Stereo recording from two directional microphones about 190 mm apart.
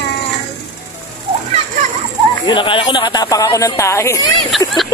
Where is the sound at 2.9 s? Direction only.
20° left (ahead or behind).